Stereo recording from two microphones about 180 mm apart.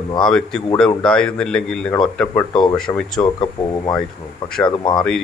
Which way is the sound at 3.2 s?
25° left (ahead or behind).